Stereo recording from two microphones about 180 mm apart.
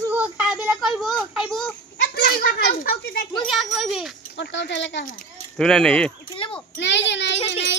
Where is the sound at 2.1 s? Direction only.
55° left (ahead or behind).